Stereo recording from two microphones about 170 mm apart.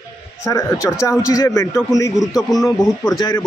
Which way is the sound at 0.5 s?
20° left (ahead or behind).